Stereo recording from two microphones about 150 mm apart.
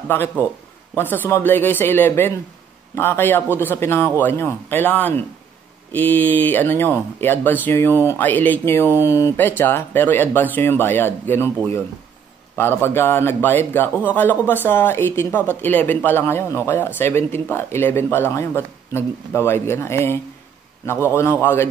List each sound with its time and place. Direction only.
0.1 s speech: 15° left (ahead or behind)